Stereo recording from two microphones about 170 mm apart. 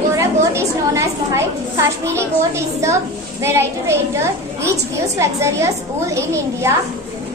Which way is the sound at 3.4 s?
15° right (ahead or behind).